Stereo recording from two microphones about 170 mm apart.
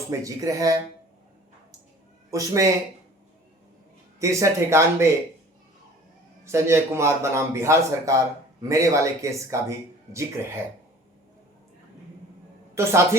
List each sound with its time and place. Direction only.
0.1 s speech: 20° right (ahead or behind)
2.3 s speech: 20° right (ahead or behind)
4.2 s a man's voice: 20° right (ahead or behind)
6.4 s a man's voice: 15° right (ahead or behind)
12.8 s a man's voice: 15° right (ahead or behind)